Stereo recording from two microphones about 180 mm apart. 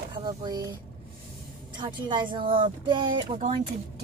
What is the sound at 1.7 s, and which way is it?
Speech, 25° right (ahead or behind).